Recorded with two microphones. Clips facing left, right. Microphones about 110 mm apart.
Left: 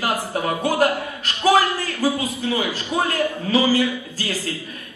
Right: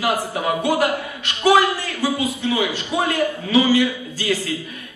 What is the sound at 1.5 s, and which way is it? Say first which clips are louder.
A man's voice: right 2 dB; 40° left (ahead or behind).